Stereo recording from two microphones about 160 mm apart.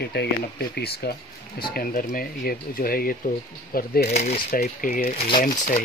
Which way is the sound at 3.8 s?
80° left.